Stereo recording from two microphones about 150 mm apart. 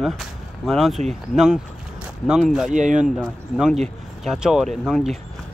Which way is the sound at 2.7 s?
55° right (ahead or behind).